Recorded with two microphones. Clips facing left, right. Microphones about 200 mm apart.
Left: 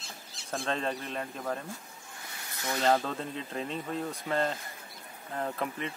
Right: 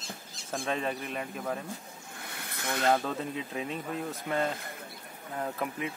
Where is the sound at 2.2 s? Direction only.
60° right (ahead or behind).